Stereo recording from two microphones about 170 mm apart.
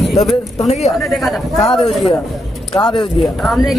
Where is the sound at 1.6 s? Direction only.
30° left (ahead or behind).